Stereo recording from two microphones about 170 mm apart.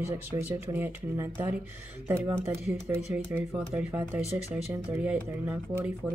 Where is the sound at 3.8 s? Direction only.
10° right (ahead or behind).